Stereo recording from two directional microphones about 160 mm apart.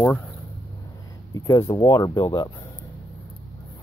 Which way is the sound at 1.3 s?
20° left (ahead or behind).